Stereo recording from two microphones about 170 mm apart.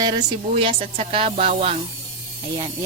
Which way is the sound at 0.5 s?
30° right (ahead or behind).